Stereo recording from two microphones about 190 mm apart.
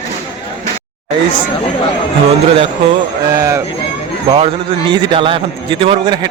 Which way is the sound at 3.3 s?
15° right (ahead or behind).